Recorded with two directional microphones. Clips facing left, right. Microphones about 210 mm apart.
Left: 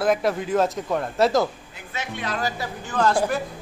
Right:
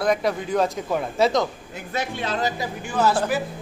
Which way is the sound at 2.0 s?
30° right (ahead or behind).